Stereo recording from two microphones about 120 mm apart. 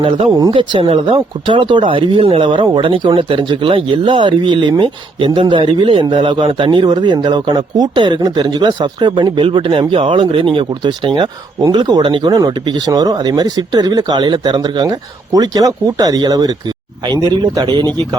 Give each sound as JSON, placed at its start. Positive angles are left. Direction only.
{"t": 0.5, "sound": "speech", "side_deg": -45}